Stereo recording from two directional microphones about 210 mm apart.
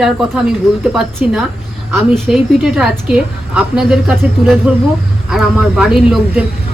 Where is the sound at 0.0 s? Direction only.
Centre (ahead or behind).